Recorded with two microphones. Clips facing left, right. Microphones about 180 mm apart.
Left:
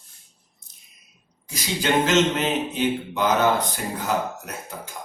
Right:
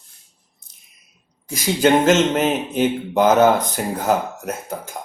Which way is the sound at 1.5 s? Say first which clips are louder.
Right 8 dB; 50° right (ahead or behind).